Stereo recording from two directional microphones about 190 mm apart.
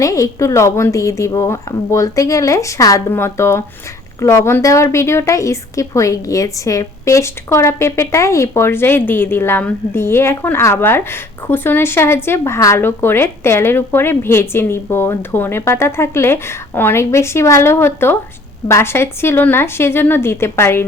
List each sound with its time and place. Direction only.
0.0 s a woman's voice: 15° left (ahead or behind)